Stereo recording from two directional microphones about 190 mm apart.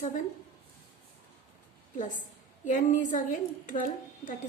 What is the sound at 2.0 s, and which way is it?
A woman's voice, 45° left (ahead or behind).